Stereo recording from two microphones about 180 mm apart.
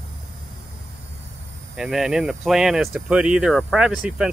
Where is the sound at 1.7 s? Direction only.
5° right (ahead or behind).